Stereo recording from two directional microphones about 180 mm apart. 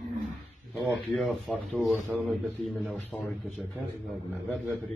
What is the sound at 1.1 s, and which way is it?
A man's voice, 5° left (ahead or behind).